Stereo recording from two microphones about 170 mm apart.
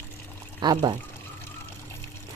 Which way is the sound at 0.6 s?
25° right (ahead or behind).